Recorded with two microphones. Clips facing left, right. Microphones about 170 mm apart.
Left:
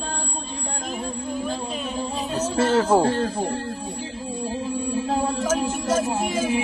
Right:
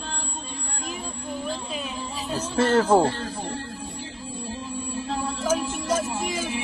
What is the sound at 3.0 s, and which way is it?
Speech, 50° left (ahead or behind).